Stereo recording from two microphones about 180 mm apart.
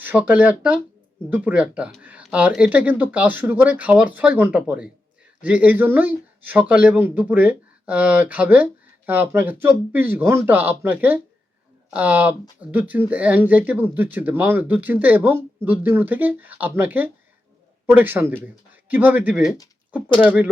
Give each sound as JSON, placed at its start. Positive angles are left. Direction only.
{"t": 0.0, "sound": "speech", "side_deg": -10}